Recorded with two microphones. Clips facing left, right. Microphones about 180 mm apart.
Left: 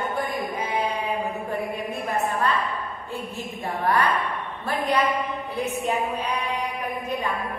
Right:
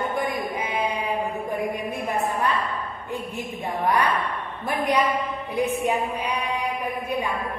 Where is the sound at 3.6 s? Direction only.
15° right (ahead or behind).